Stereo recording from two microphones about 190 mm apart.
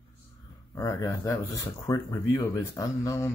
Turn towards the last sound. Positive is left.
turn(degrees=15)  # may be behind; listen again after turning